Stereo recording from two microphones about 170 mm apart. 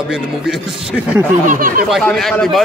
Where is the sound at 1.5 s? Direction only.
55° right (ahead or behind).